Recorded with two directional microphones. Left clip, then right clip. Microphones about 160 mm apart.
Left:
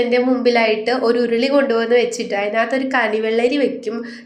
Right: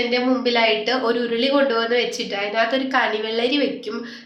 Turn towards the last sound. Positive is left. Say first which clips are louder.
# left 4 dB
turn(degrees=30)  # may be behind; listen again after turning